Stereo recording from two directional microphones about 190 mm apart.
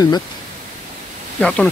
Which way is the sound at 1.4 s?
5° left (ahead or behind).